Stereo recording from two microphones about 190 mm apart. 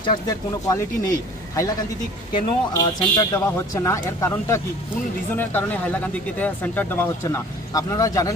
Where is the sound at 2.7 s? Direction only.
20° left (ahead or behind).